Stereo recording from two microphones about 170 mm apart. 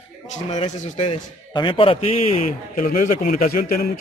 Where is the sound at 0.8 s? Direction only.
35° left (ahead or behind).